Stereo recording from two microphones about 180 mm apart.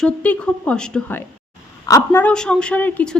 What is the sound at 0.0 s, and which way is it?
A woman's voice, 5° left (ahead or behind).